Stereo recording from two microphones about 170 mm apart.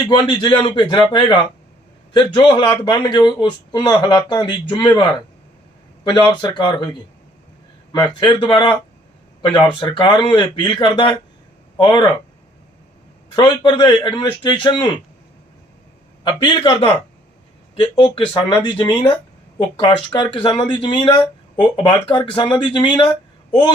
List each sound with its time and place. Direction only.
0.0 s speech: 25° left (ahead or behind)
7.9 s speech: 30° left (ahead or behind)
13.3 s speech: 30° left (ahead or behind)
16.2 s speech: 30° left (ahead or behind)
18.1 s speech: 30° left (ahead or behind)